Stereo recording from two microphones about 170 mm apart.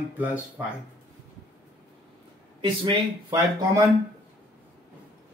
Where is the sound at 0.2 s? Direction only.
10° right (ahead or behind).